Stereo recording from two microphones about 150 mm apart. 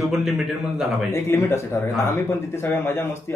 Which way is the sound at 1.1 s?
15° left (ahead or behind).